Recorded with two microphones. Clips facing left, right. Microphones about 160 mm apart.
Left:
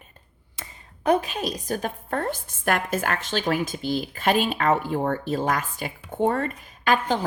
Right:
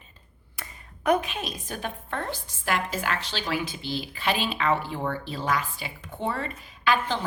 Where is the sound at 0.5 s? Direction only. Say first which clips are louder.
Left 1 dB; 30° left (ahead or behind).